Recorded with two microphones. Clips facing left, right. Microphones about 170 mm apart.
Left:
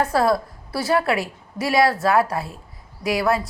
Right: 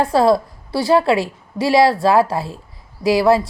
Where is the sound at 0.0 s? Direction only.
25° right (ahead or behind).